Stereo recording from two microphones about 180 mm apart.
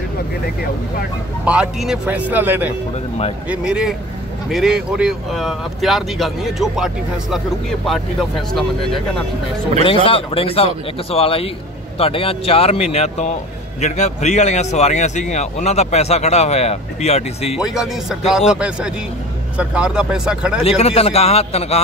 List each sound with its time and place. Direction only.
1.4 s speech: 5° right (ahead or behind)
9.8 s a man's voice: 30° left (ahead or behind)
17.6 s speech: centre (ahead or behind)
20.6 s a man's voice: 35° left (ahead or behind)